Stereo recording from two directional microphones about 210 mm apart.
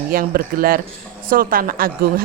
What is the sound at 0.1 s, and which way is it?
A woman's voice, 45° right (ahead or behind).